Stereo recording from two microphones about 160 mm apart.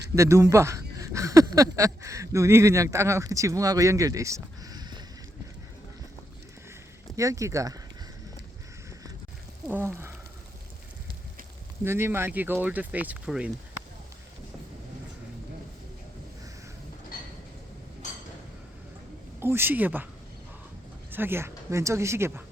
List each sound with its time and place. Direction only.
0.2 s speech: 20° right (ahead or behind)
4.6 s a sound: 25° right (ahead or behind)
7.2 s speech: 20° right (ahead or behind)
9.6 s speech: 15° right (ahead or behind)
11.9 s speech: 15° right (ahead or behind)
18.0 s a sound: 50° left (ahead or behind)
19.4 s speech: 15° right (ahead or behind)
21.1 s speech: 15° right (ahead or behind)